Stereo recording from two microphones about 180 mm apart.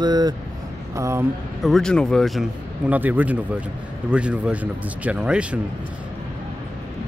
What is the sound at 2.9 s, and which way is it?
Speech, 10° right (ahead or behind).